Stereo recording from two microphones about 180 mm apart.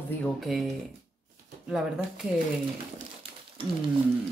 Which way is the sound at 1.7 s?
5° right (ahead or behind).